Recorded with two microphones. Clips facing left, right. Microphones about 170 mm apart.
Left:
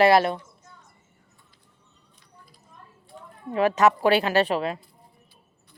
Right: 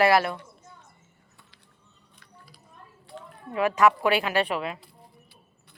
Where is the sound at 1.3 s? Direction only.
80° right.